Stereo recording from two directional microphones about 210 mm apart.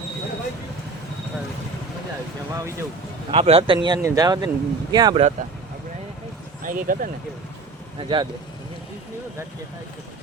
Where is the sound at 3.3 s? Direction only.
25° right (ahead or behind).